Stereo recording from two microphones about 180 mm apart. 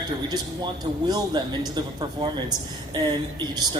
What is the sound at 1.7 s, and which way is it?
A man's voice, 25° right (ahead or behind).